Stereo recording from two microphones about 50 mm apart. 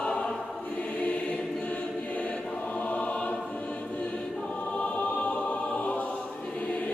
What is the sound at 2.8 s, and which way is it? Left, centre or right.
Choir, left.